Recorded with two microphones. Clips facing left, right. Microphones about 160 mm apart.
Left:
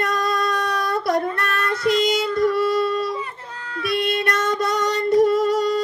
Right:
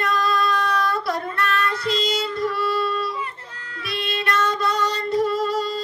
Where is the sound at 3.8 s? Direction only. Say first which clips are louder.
Left 5 dB; 50° left (ahead or behind).